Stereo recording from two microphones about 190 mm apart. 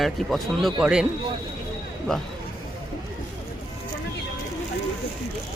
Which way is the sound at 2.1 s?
5° left (ahead or behind).